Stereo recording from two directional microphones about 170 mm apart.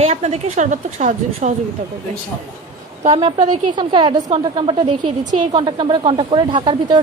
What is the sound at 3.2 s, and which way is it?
A woman's voice, 30° right (ahead or behind).